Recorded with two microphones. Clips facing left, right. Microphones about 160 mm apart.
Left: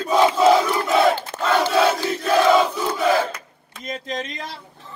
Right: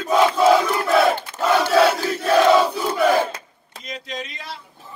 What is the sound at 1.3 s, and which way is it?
Crowd, 75° left (ahead or behind).